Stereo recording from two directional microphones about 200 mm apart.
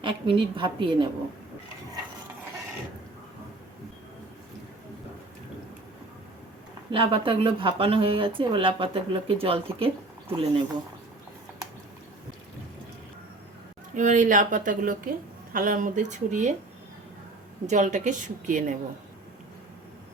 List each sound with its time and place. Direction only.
0.0 s speech: 25° right (ahead or behind)
6.9 s speech: 25° right (ahead or behind)
13.9 s a woman's voice: 40° right (ahead or behind)
17.7 s a woman's voice: 35° right (ahead or behind)